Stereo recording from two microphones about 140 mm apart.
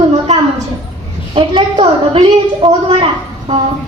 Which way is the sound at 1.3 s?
40° right (ahead or behind).